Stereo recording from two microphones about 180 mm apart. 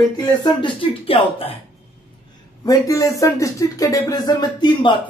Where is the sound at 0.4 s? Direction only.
25° left (ahead or behind).